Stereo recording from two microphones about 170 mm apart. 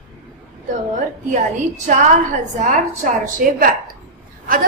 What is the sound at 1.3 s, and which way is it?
A woman's voice, 45° right (ahead or behind).